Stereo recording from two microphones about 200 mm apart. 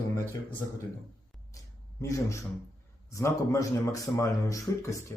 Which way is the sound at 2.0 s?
15° left (ahead or behind).